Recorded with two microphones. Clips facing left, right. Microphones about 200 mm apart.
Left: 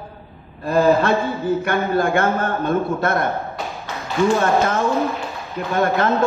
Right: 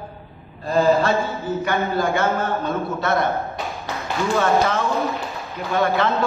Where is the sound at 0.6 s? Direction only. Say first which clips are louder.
Left 2 dB; 60° left (ahead or behind).